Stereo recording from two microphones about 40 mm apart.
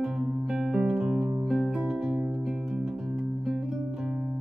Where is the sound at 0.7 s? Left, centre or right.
Right.